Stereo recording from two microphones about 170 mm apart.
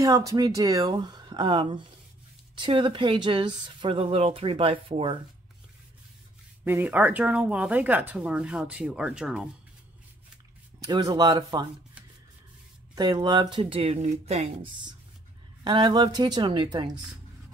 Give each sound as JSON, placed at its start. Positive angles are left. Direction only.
{"t": 0.0, "sound": "speech", "side_deg": -20}
{"t": 6.6, "sound": "speech", "side_deg": -10}
{"t": 10.9, "sound": "speech", "side_deg": -25}
{"t": 12.9, "sound": "speech", "side_deg": -25}
{"t": 15.6, "sound": "speech", "side_deg": -25}